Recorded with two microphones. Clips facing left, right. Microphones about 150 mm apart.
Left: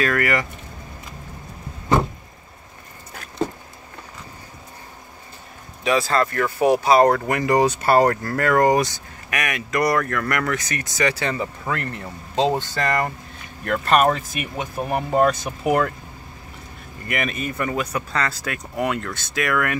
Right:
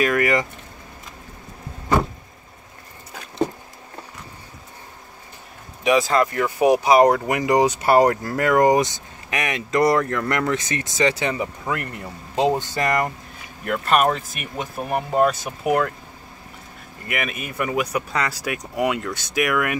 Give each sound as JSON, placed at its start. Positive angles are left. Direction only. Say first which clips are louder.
{"t": 0.0, "sound": "speech", "louder": "right 2 dB", "side_deg": -15}
{"t": 5.9, "sound": "speech", "louder": "right 2 dB", "side_deg": -15}
{"t": 13.7, "sound": "speech", "louder": "left 1 dB", "side_deg": -5}
{"t": 17.1, "sound": "speech", "louder": "left 2 dB", "side_deg": -5}